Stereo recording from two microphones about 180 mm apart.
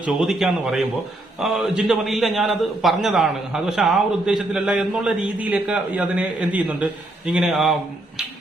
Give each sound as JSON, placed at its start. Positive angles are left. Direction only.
{"t": 0.0, "sound": "a man's voice", "side_deg": -5}